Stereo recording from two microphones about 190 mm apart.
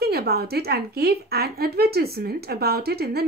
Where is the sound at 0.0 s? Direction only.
55° right (ahead or behind).